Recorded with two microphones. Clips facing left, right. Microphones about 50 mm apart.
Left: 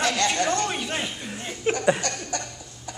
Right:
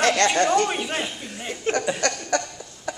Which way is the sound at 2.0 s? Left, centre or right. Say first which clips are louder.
Right 6 dB; right.